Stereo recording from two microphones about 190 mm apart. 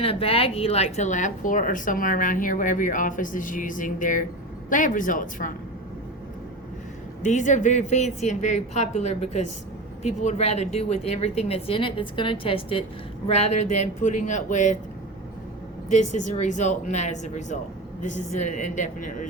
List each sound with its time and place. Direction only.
0.0 s speech: 30° left (ahead or behind); by 5.5 s 45° left (ahead or behind)
7.2 s a woman's voice: 40° left (ahead or behind)
15.9 s a woman's voice: 40° left (ahead or behind)